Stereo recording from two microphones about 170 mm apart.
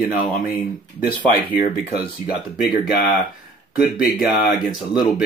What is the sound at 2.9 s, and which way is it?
Speech, 60° left (ahead or behind).